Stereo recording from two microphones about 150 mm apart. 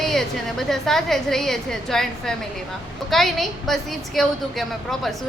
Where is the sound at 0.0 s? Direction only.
Centre (ahead or behind).